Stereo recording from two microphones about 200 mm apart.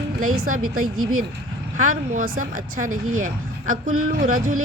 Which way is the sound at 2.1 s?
45° right (ahead or behind).